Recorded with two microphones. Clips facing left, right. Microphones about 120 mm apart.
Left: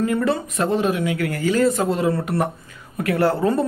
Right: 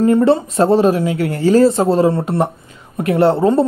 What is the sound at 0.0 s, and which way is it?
Speech, 30° right (ahead or behind).